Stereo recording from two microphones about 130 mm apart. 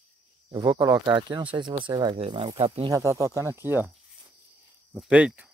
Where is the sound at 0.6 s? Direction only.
35° right (ahead or behind).